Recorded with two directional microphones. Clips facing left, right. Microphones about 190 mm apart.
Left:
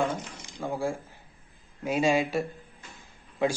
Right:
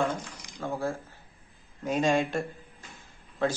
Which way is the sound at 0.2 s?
25° left (ahead or behind).